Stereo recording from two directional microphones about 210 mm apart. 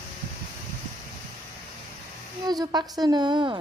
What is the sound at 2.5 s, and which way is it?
A woman's voice, 20° right (ahead or behind).